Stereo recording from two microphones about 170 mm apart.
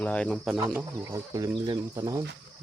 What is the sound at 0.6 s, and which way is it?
Speech, 20° right (ahead or behind).